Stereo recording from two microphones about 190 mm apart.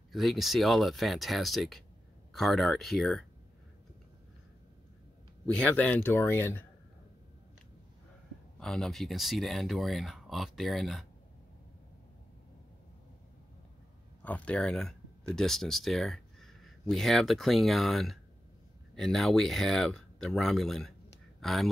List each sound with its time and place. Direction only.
0.1 s speech: centre (ahead or behind)
5.6 s speech: 10° left (ahead or behind)
8.5 s speech: 5° left (ahead or behind)
14.2 s speech: 5° left (ahead or behind)